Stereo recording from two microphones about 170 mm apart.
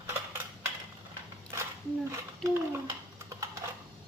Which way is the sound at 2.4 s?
20° right (ahead or behind).